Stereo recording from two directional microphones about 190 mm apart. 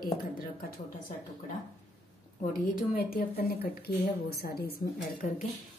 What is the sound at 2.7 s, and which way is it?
A woman's voice, 50° left (ahead or behind).